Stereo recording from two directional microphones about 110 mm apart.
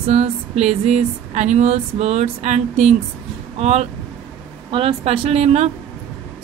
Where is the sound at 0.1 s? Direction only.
80° right.